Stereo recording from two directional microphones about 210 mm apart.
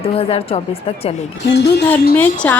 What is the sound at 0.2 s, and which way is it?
Speech, 25° left (ahead or behind).